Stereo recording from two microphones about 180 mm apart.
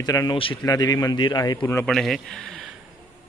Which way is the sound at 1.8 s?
Centre (ahead or behind).